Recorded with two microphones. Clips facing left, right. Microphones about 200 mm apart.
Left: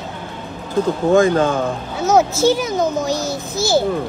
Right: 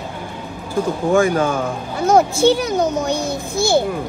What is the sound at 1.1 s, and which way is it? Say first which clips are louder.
Speech: left 2 dB; 10° right (ahead or behind).